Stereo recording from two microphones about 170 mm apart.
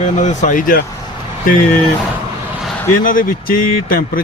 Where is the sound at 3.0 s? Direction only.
55° left (ahead or behind).